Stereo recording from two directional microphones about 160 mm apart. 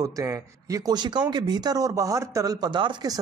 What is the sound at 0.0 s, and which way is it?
Speech, 20° right (ahead or behind).